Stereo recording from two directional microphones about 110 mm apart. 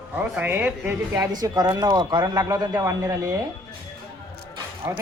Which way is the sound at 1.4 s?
35° right (ahead or behind).